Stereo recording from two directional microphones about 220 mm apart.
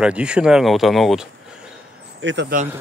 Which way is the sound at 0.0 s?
5° right (ahead or behind).